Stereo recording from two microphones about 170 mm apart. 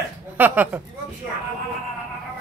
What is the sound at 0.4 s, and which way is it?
Speech, 10° right (ahead or behind).